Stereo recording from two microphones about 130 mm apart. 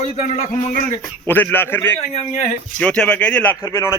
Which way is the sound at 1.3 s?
15° left (ahead or behind).